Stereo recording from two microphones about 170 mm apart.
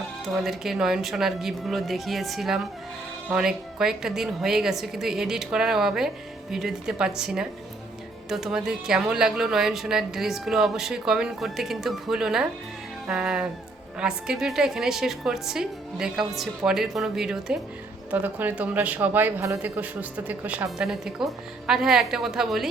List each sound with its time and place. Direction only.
0.3 s a woman's voice: centre (ahead or behind)